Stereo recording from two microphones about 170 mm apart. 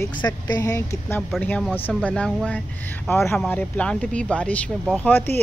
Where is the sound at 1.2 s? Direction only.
5° left (ahead or behind).